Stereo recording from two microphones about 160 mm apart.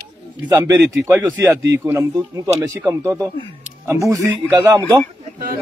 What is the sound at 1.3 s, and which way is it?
A man's voice, 10° right (ahead or behind).